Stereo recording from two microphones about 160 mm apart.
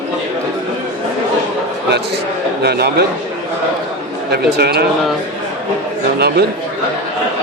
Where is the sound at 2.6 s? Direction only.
80° right.